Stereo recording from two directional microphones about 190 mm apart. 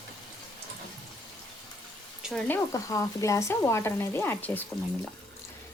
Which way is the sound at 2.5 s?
15° left (ahead or behind).